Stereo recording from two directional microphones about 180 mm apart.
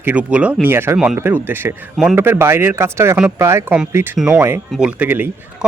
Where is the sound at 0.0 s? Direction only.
10° right (ahead or behind).